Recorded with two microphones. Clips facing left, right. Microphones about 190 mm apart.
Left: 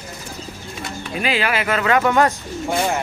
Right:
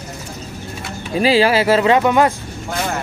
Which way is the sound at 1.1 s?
30° right (ahead or behind).